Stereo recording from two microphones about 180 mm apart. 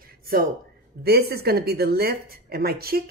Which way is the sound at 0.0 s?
55° right (ahead or behind).